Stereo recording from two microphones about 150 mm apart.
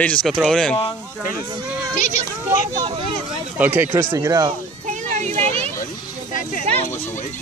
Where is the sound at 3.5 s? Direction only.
10° right (ahead or behind).